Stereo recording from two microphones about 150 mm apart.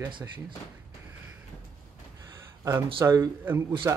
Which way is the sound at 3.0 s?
20° right (ahead or behind).